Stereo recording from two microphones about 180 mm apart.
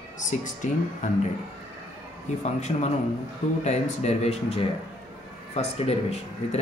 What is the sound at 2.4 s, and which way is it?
Speech, 40° left (ahead or behind).